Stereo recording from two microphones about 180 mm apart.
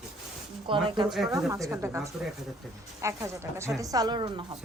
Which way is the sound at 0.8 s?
25° right (ahead or behind).